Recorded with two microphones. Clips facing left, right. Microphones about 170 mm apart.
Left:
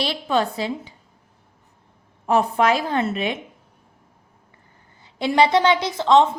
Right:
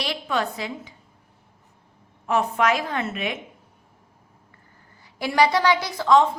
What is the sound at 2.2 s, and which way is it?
A woman's voice, 35° left (ahead or behind).